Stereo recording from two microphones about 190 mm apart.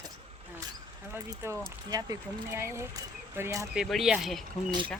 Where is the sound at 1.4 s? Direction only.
15° right (ahead or behind).